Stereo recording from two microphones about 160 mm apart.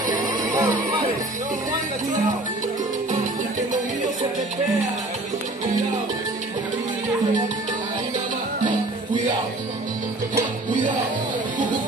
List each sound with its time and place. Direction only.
0.2 s music: 20° right (ahead or behind)
10.7 s music: 55° right (ahead or behind)